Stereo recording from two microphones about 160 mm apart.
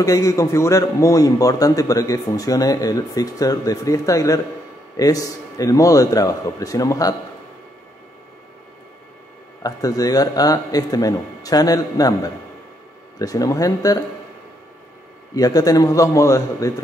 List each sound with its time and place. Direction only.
0.0 s a man's voice: 20° left (ahead or behind)
9.6 s a man's voice: 20° left (ahead or behind)
15.3 s a man's voice: 25° left (ahead or behind)